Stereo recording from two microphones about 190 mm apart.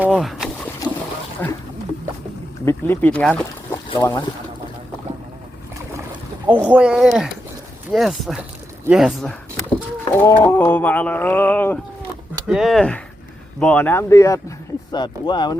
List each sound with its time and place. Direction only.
0.0 s rowboat: 5° right (ahead or behind)
1.4 s speech: 10° left (ahead or behind)
2.6 s speech: 10° left (ahead or behind)
3.8 s speech: 25° left (ahead or behind)
6.5 s speech: 5° right (ahead or behind)
10.1 s a sound: 15° left (ahead or behind)
12.5 s speech: centre (ahead or behind)
13.6 s a sound: 5° left (ahead or behind)
14.9 s speech: 25° left (ahead or behind)